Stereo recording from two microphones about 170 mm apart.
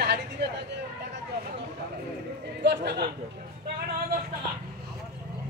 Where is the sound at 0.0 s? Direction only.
75° right (ahead or behind).